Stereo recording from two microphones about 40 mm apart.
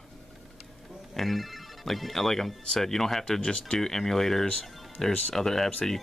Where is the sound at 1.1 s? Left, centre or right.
Centre.